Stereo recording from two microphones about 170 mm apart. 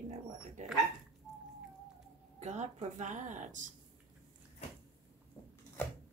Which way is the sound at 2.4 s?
40° right (ahead or behind).